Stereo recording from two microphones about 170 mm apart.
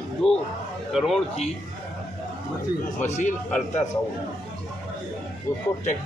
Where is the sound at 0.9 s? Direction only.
Centre (ahead or behind).